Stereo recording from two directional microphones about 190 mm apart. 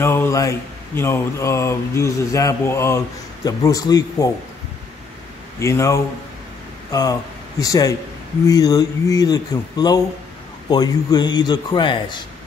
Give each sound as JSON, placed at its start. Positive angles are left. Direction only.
{"t": 0.0, "sound": "a man's voice", "side_deg": 15}
{"t": 5.6, "sound": "a man's voice", "side_deg": 15}